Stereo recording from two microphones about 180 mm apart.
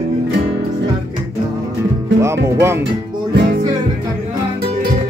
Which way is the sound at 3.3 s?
70° right (ahead or behind).